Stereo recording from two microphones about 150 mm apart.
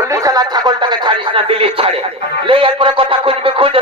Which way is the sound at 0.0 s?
20° right (ahead or behind).